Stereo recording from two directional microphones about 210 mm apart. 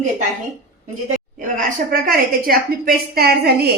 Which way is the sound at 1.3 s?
40° right (ahead or behind).